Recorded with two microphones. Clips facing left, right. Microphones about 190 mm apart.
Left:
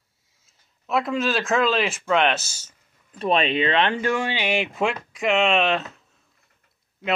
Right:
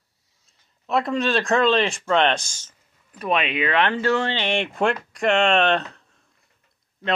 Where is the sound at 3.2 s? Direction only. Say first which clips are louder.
Left 2 dB; 30° left (ahead or behind).